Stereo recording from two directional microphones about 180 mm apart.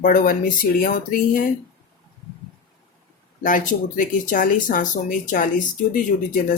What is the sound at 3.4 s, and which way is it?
Speech, 45° left (ahead or behind).